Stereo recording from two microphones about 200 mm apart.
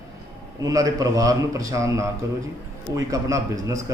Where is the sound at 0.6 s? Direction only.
15° right (ahead or behind).